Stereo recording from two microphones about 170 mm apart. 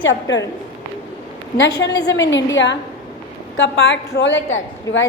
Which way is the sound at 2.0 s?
90° left.